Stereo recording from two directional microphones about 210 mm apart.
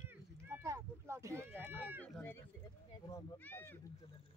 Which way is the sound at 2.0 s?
10° left (ahead or behind).